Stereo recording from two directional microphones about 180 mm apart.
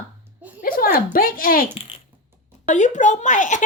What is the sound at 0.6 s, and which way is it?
A child's voice, 55° left (ahead or behind).